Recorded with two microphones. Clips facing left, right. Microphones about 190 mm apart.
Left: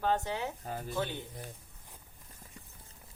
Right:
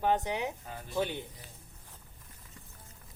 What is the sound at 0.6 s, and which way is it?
Speech, 45° left (ahead or behind).